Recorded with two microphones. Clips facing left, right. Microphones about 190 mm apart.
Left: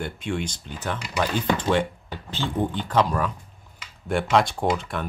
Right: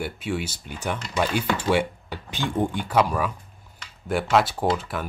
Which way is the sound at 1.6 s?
10° right (ahead or behind).